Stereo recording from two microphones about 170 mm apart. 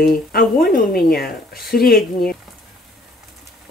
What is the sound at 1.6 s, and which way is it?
Speech, centre (ahead or behind).